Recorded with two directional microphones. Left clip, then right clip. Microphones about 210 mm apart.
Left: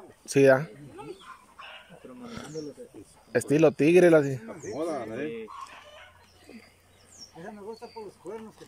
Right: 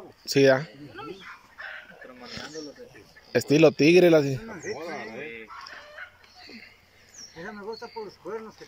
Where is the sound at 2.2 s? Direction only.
10° left (ahead or behind).